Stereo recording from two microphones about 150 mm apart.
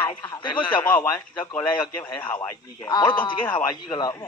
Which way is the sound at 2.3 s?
25° left (ahead or behind).